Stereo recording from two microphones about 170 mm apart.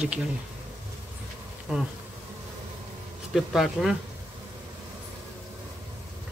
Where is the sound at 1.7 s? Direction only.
5° right (ahead or behind).